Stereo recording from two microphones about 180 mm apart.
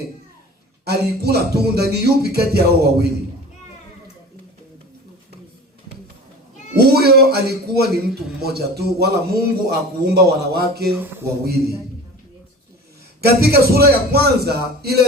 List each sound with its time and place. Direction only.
0.9 s speech: 65° right (ahead or behind)
6.8 s speech: 60° right (ahead or behind)
13.2 s speech: 60° right (ahead or behind)